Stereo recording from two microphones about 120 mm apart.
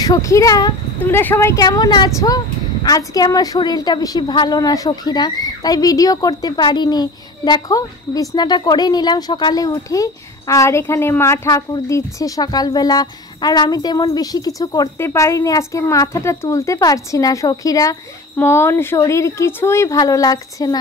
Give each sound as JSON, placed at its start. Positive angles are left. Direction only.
{"t": 0.0, "sound": "a child's voice", "side_deg": 30}
{"t": 1.0, "sound": "a child's voice", "side_deg": 20}